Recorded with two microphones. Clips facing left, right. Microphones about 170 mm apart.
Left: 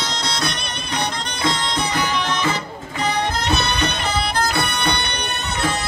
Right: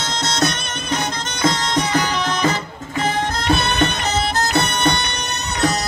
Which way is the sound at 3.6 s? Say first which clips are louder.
Right 3 dB; 45° right (ahead or behind).